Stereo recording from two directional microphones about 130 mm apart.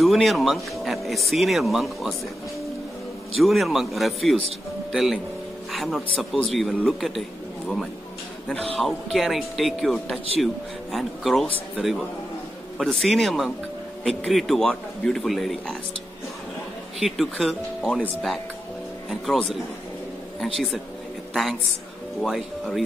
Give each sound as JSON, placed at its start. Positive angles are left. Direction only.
{"t": 0.0, "sound": "speech", "side_deg": 0}
{"t": 3.3, "sound": "speech", "side_deg": 0}
{"t": 17.0, "sound": "speech", "side_deg": 0}
{"t": 19.0, "sound": "a woman's voice", "side_deg": 0}